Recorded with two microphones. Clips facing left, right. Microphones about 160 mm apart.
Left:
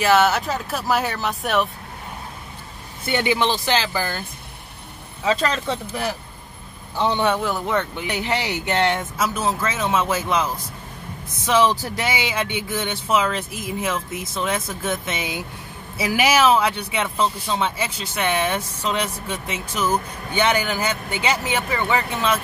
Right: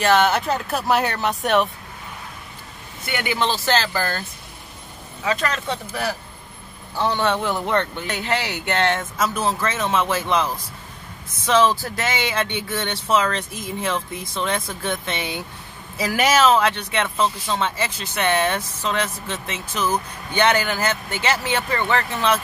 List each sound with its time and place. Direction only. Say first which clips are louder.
0.0 s speech: even; 5° left (ahead or behind)
3.1 s speech: left 3 dB; 25° left (ahead or behind)
5.2 s speech: left 2 dB; 25° left (ahead or behind); by 22.4 s 10° left (ahead or behind)